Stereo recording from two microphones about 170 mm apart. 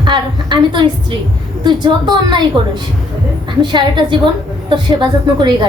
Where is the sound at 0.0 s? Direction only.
30° right (ahead or behind).